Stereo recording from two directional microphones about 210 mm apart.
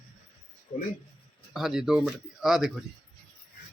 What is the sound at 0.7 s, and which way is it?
Speech, 35° left (ahead or behind).